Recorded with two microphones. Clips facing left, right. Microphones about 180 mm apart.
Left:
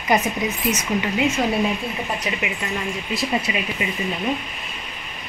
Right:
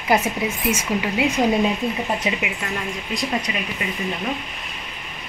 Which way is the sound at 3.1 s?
5° left (ahead or behind).